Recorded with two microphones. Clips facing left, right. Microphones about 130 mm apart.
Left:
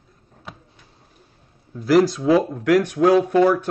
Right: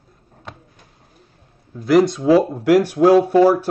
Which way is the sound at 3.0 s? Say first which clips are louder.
Right 4 dB; 30° right (ahead or behind).